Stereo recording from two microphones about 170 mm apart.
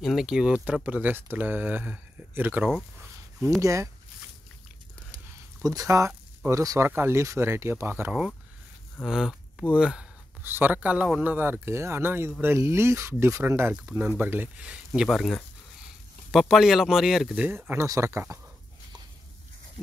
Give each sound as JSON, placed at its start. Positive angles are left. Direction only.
{"t": 0.0, "sound": "speech", "side_deg": 0}
{"t": 5.6, "sound": "speech", "side_deg": -20}